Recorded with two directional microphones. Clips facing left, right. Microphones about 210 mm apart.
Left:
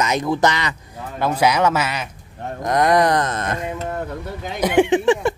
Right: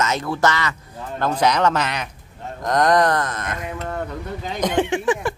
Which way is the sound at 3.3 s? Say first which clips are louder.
Left 4 dB; 30° left (ahead or behind).